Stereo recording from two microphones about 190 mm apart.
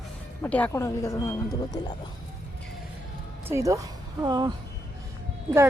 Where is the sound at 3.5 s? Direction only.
15° right (ahead or behind).